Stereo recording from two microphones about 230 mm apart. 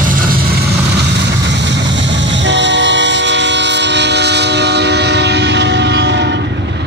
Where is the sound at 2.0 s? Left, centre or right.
Right.